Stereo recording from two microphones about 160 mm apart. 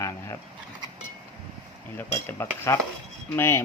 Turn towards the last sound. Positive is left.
turn(degrees=15)  # may be behind; listen again after turning